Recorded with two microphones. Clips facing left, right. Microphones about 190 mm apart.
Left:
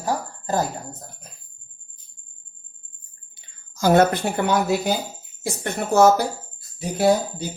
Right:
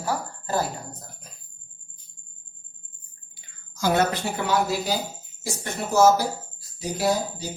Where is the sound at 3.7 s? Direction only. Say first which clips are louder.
Left 6 dB; 45° left (ahead or behind).